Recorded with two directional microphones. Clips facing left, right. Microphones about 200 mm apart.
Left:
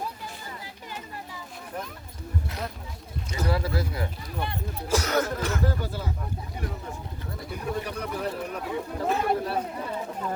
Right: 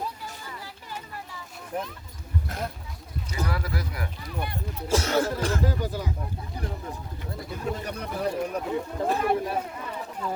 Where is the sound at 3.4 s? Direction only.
30° left (ahead or behind).